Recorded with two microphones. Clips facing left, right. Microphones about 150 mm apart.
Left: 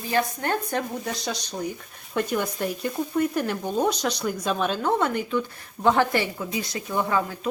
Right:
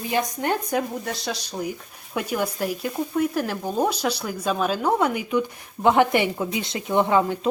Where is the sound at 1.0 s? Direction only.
Centre (ahead or behind).